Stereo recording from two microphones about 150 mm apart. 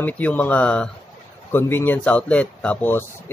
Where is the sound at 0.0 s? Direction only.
10° left (ahead or behind).